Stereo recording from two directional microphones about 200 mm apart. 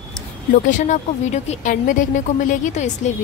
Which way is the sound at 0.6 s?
40° left (ahead or behind).